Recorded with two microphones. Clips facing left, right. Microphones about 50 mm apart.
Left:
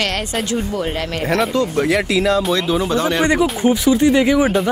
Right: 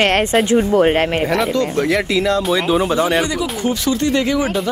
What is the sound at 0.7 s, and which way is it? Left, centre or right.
Speech, right.